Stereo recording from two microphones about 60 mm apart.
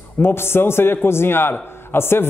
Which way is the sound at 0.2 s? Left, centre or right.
Left.